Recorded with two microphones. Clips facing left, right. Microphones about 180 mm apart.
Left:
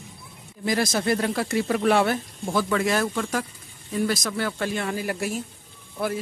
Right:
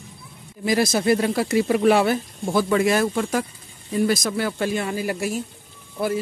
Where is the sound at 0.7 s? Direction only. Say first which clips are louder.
Right 4 dB; 10° right (ahead or behind).